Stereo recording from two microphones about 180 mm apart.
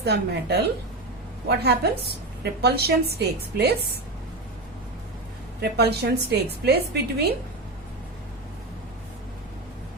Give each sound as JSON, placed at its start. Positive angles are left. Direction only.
{"t": 0.0, "sound": "a woman's voice", "side_deg": -65}
{"t": 5.5, "sound": "a woman's voice", "side_deg": -65}